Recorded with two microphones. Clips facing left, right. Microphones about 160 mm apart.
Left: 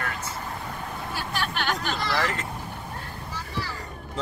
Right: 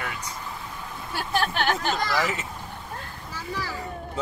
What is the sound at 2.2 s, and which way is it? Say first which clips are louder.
Speech: even; 5° right (ahead or behind).